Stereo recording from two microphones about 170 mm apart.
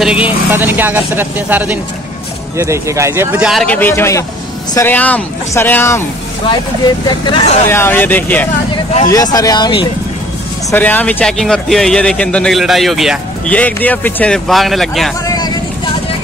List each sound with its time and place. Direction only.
0.0 s speech: 5° right (ahead or behind)
3.6 s speech: 10° left (ahead or behind)
7.1 s speech: 25° left (ahead or behind)
7.7 s speech: 10° left (ahead or behind)
9.1 s speech: 20° left (ahead or behind)
10.7 s speech: 10° left (ahead or behind)
13.6 s speech: 10° left (ahead or behind)
15.2 s vehicle: 25° left (ahead or behind)